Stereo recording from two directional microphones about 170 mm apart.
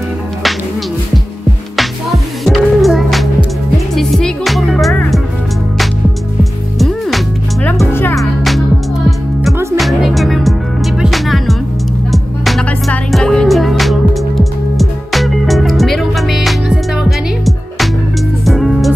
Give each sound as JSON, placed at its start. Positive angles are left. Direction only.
{"t": 1.8, "sound": "music", "side_deg": 0}
{"t": 7.6, "sound": "music", "side_deg": 10}
{"t": 8.2, "sound": "music", "side_deg": 0}
{"t": 9.5, "sound": "music", "side_deg": -15}
{"t": 9.8, "sound": "music", "side_deg": 0}
{"t": 18.4, "sound": "music", "side_deg": 0}